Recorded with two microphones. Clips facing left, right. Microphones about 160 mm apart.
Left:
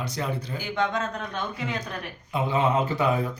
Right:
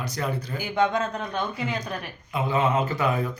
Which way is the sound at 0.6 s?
5° right (ahead or behind).